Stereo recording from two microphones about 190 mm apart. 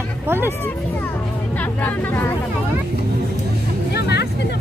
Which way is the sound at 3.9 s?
60° left (ahead or behind).